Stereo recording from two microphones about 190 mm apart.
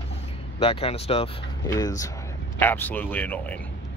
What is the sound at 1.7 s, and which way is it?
Speech, 20° left (ahead or behind).